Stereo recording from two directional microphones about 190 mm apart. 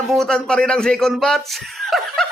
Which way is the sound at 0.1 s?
5° left (ahead or behind).